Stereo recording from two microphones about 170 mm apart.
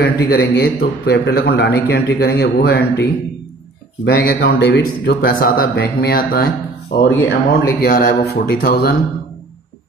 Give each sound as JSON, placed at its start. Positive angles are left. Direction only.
{"t": 0.0, "sound": "a man's voice", "side_deg": 65}